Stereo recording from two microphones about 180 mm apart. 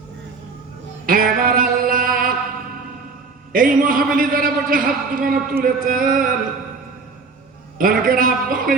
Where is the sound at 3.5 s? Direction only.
50° right (ahead or behind).